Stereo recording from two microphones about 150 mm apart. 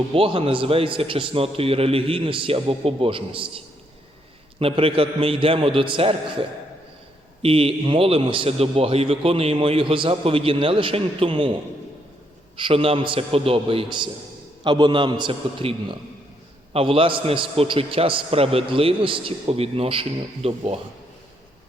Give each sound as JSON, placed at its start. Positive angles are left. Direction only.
{"t": 0.1, "sound": "a man's voice", "side_deg": -40}
{"t": 4.6, "sound": "a man's voice", "side_deg": -35}
{"t": 7.4, "sound": "a man's voice", "side_deg": -40}
{"t": 12.5, "sound": "a man's voice", "side_deg": -35}